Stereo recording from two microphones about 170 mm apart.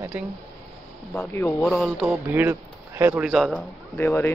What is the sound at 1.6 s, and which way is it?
Speech, centre (ahead or behind).